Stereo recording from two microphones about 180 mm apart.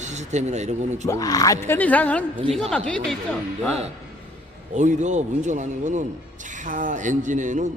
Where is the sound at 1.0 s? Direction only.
20° left (ahead or behind).